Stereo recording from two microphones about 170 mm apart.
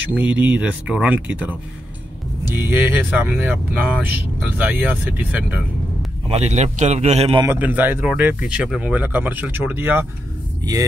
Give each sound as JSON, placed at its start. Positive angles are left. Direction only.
{"t": 0.1, "sound": "speech", "side_deg": -10}
{"t": 6.2, "sound": "a man's voice", "side_deg": -40}
{"t": 7.4, "sound": "speech", "side_deg": -10}